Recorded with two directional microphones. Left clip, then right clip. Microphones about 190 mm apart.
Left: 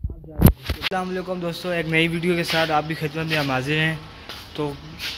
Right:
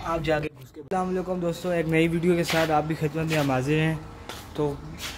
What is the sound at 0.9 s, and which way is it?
A man's voice, centre (ahead or behind).